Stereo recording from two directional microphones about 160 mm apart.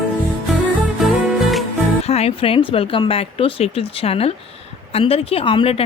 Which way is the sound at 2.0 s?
40° left (ahead or behind).